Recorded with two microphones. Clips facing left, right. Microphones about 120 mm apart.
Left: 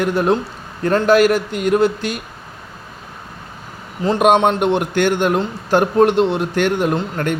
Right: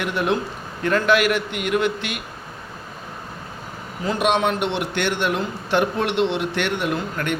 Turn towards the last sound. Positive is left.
turn(degrees=40)  # may be behind; listen again after turning